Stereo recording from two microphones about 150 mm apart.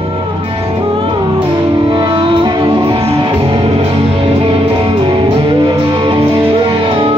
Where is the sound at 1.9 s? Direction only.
30° right (ahead or behind).